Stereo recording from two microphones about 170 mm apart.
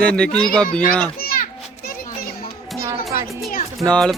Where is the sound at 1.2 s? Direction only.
60° left (ahead or behind).